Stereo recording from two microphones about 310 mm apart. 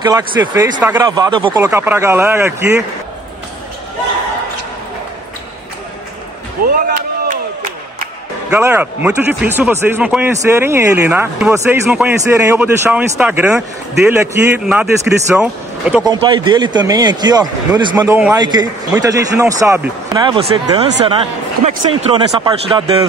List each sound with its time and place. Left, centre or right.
0.0 s a man's voice: centre
6.6 s chop: right
8.5 s speech: centre
16.1 s a man's voice: centre
22.1 s a man's voice: centre